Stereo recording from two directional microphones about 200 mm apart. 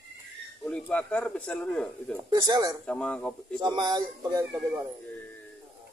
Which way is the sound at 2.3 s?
20° right (ahead or behind).